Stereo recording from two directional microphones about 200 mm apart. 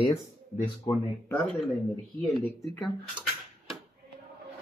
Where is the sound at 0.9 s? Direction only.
15° left (ahead or behind).